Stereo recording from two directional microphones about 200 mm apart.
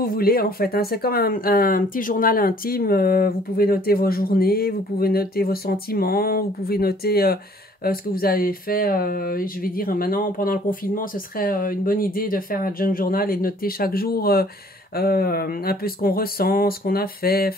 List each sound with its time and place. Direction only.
0.0 s speech: 50° left (ahead or behind)